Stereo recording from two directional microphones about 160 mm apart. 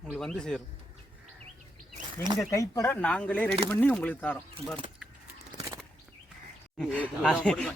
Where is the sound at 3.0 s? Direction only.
10° left (ahead or behind).